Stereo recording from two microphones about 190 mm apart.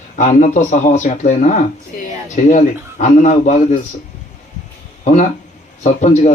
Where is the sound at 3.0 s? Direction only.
40° left (ahead or behind).